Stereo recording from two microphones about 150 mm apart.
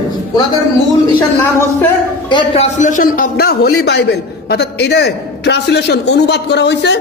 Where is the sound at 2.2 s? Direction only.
35° left (ahead or behind); by 6.3 s 90° left.